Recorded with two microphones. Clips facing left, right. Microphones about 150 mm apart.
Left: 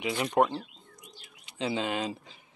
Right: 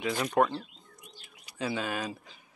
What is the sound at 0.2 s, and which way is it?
Speech, 20° left (ahead or behind).